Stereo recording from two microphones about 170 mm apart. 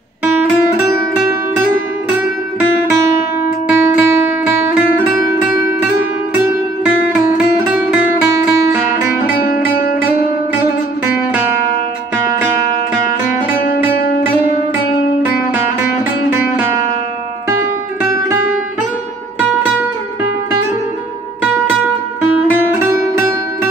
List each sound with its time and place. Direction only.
3.6 s music: 10° right (ahead or behind)
8.9 s music: 15° right (ahead or behind)
9.4 s music: 60° left (ahead or behind)